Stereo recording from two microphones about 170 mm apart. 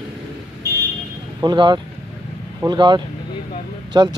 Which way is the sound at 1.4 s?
25° right (ahead or behind).